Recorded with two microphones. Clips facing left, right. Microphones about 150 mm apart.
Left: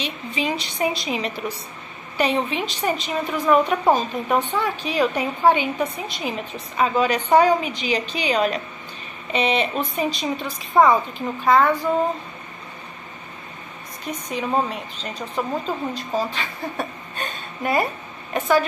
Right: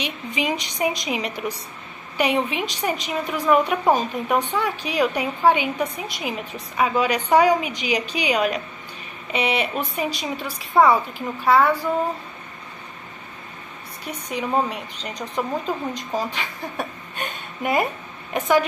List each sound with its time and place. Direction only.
0.0 s speech: 15° right (ahead or behind)
14.3 s speech: 15° right (ahead or behind)